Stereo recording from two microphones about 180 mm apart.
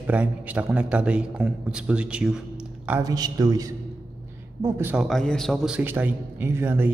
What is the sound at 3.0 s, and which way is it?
A man's voice, 20° right (ahead or behind).